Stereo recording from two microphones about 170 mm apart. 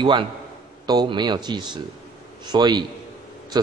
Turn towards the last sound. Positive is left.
turn(degrees=-25)  # may be behind; listen again after turning